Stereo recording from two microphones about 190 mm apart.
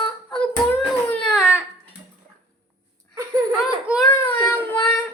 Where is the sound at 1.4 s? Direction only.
5° right (ahead or behind).